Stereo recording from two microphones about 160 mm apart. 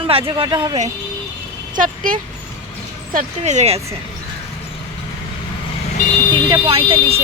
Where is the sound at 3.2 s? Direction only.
45° right (ahead or behind).